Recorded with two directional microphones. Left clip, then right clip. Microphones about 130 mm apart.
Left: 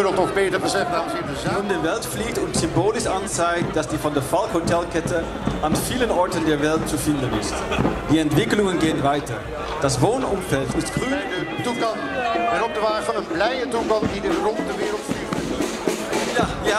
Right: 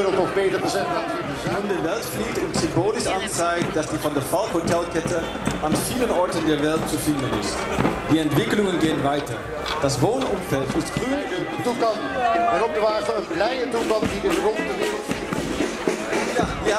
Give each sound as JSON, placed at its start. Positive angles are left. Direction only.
{"t": 0.0, "sound": "a man's voice", "side_deg": 40}
{"t": 3.4, "sound": "a man's voice", "side_deg": 40}
{"t": 8.1, "sound": "a man's voice", "side_deg": 40}
{"t": 12.5, "sound": "a man's voice", "side_deg": 40}